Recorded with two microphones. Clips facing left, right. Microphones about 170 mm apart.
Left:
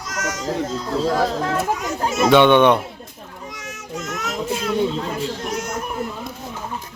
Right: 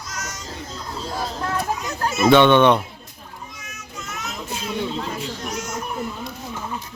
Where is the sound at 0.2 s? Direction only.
90° left.